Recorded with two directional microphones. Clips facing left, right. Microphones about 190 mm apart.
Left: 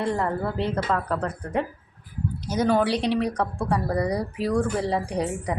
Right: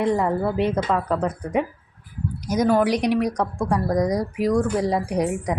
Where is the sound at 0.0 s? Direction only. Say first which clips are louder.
Right 4 dB; 15° right (ahead or behind).